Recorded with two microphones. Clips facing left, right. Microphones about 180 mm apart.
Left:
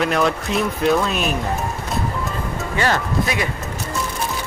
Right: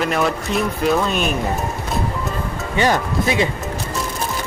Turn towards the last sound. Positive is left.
turn(degrees=-25)  # may be behind; listen again after turning